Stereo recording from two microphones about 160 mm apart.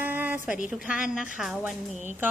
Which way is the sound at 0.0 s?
10° right (ahead or behind).